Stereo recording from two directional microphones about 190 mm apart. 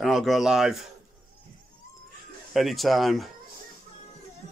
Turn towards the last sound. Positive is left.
turn(degrees=0)  # may be behind; listen again after turning